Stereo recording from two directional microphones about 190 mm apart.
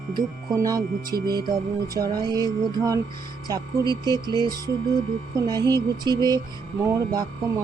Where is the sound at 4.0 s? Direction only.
20° right (ahead or behind).